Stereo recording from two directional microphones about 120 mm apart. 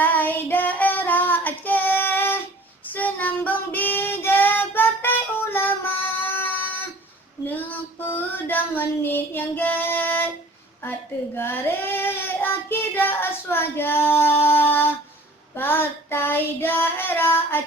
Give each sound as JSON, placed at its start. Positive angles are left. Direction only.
{"t": 0.0, "sound": "child singing", "side_deg": 15}
{"t": 7.4, "sound": "female singing", "side_deg": 15}
{"t": 8.4, "sound": "music", "side_deg": 15}
{"t": 11.3, "sound": "child singing", "side_deg": 15}
{"t": 14.6, "sound": "a sound", "side_deg": 20}
{"t": 15.5, "sound": "child singing", "side_deg": 15}